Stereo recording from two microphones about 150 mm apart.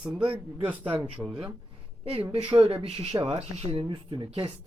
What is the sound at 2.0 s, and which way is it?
A woman's voice, 40° right (ahead or behind).